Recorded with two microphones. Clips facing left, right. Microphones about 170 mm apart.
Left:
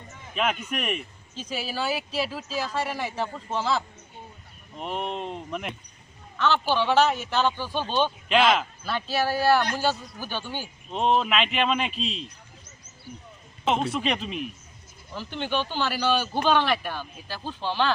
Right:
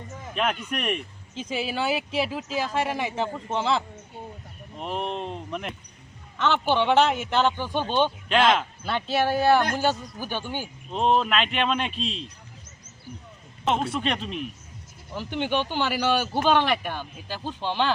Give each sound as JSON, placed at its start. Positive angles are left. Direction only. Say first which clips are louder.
{"t": 0.4, "sound": "a man's voice", "louder": "even", "side_deg": 0}
{"t": 1.4, "sound": "speech", "louder": "right 3 dB", "side_deg": -20}
{"t": 4.8, "sound": "a man's voice", "louder": "right 1 dB", "side_deg": 0}
{"t": 6.4, "sound": "speech", "louder": "right 1 dB", "side_deg": -20}
{"t": 8.3, "sound": "a man's voice", "louder": "left 1 dB", "side_deg": 5}
{"t": 8.8, "sound": "speech", "louder": "right 2 dB", "side_deg": -20}
{"t": 10.9, "sound": "a man's voice", "louder": "right 1 dB", "side_deg": 0}
{"t": 13.7, "sound": "a man's voice", "louder": "even", "side_deg": 0}
{"t": 15.1, "sound": "speech", "louder": "right 2 dB", "side_deg": -15}